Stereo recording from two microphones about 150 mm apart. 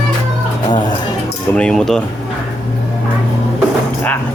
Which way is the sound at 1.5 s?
5° left (ahead or behind).